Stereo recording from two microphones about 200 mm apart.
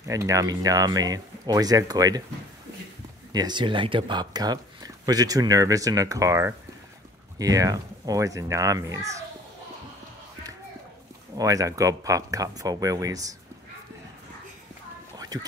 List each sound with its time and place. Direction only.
0.1 s speech: 15° right (ahead or behind)
3.3 s speech: 20° right (ahead or behind)
11.3 s speech: 15° right (ahead or behind)
15.1 s a sound: 20° right (ahead or behind)